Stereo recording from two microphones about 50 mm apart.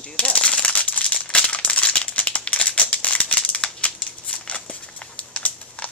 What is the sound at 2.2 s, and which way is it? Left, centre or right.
Crumpling, left.